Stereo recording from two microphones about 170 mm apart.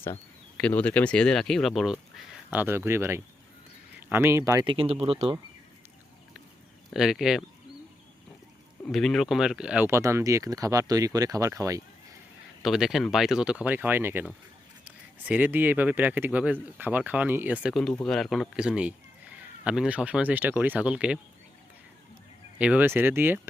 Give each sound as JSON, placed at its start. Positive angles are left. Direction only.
{"t": 0.0, "sound": "speech", "side_deg": 10}
{"t": 4.6, "sound": "speech", "side_deg": -30}
{"t": 6.9, "sound": "speech", "side_deg": -5}
{"t": 8.9, "sound": "speech", "side_deg": 0}
{"t": 12.6, "sound": "speech", "side_deg": 0}
{"t": 22.5, "sound": "speech", "side_deg": -10}